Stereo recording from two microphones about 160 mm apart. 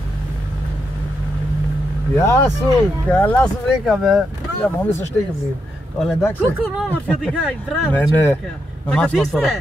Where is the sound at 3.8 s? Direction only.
Centre (ahead or behind).